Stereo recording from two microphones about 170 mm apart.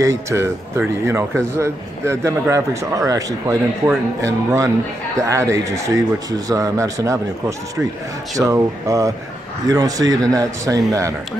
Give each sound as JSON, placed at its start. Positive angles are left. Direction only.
{"t": 0.0, "sound": "speech", "side_deg": -15}